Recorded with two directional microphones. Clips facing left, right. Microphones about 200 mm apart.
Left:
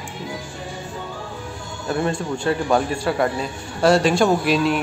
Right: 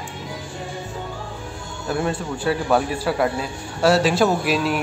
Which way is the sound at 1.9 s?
5° right (ahead or behind).